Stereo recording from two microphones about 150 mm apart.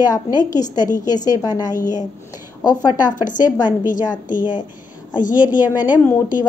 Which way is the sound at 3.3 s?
60° left (ahead or behind).